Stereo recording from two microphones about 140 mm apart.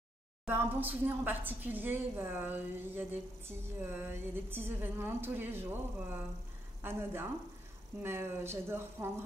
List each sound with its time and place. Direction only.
0.5 s a woman's voice: 15° right (ahead or behind)
6.8 s a woman's voice: 15° right (ahead or behind)